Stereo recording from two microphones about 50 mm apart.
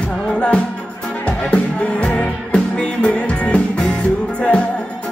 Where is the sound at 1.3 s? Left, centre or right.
Left.